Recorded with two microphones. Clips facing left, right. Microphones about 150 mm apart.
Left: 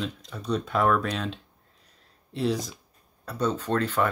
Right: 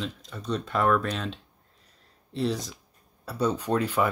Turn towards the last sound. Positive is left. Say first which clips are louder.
# even
turn(degrees=-10)  # may be behind; listen again after turning